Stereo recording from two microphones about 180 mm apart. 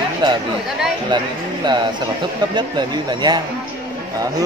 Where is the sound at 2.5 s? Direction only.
25° right (ahead or behind).